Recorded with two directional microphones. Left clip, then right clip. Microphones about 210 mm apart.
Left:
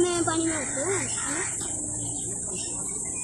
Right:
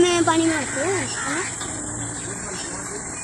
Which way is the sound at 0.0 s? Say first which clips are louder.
Right 7 dB; 35° right (ahead or behind).